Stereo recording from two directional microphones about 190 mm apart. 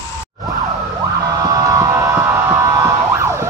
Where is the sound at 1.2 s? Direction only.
20° right (ahead or behind).